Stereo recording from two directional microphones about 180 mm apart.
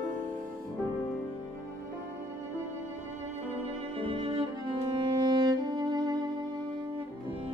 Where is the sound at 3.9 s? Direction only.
30° right (ahead or behind).